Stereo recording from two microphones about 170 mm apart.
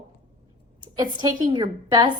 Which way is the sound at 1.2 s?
25° right (ahead or behind).